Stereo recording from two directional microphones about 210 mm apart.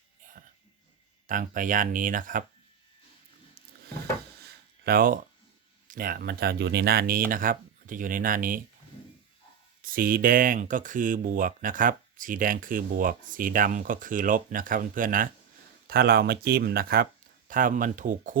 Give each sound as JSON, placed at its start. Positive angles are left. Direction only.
{"t": 1.3, "sound": "speech", "side_deg": -40}
{"t": 4.8, "sound": "speech", "side_deg": -45}
{"t": 9.8, "sound": "speech", "side_deg": -40}